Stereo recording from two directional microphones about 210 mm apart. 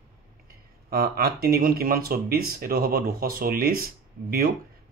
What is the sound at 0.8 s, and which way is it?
Speech, 45° right (ahead or behind).